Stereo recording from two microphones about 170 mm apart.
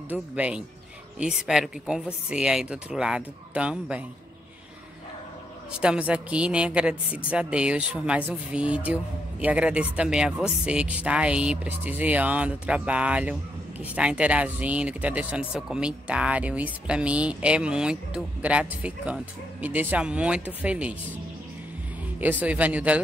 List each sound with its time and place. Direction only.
0.1 s a woman's voice: 5° right (ahead or behind)
5.7 s speech: 5° right (ahead or behind)
22.4 s speech: 10° right (ahead or behind)